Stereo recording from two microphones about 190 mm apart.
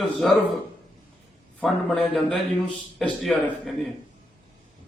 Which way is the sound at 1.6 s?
Centre (ahead or behind).